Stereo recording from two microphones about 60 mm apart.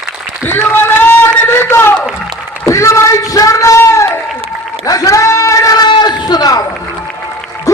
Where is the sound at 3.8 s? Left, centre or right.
Left.